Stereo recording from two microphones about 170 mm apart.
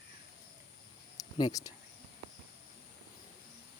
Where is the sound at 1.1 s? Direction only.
20° left (ahead or behind).